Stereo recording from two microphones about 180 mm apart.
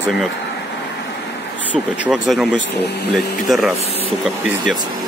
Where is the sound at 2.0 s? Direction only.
5° right (ahead or behind).